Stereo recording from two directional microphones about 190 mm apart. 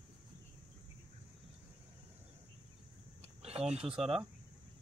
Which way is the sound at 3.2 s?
35° right (ahead or behind).